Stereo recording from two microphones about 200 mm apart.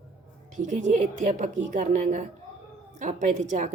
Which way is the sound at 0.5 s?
40° right (ahead or behind).